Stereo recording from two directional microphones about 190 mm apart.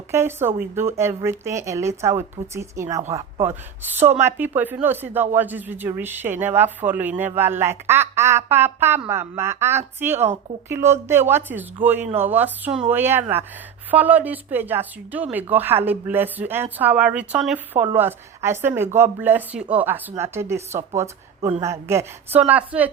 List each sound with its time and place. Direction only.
0.1 s speech: 15° right (ahead or behind)